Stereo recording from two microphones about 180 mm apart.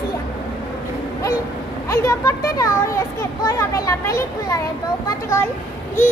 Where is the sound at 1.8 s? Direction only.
15° left (ahead or behind).